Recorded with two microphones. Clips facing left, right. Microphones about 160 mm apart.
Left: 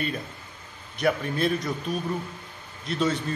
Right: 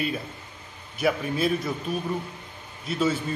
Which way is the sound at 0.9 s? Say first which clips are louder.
Even; 5° right (ahead or behind).